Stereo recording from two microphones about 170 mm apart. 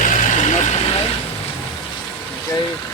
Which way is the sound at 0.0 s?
50° left (ahead or behind).